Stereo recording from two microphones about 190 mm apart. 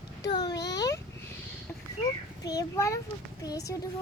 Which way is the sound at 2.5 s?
15° left (ahead or behind).